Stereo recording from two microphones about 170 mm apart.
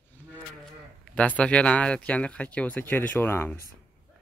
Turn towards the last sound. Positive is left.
turn(degrees=10)  # may be behind; listen again after turning